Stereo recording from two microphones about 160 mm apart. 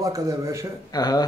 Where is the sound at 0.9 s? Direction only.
25° left (ahead or behind).